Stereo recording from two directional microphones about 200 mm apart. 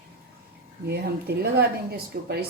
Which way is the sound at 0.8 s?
55° right (ahead or behind).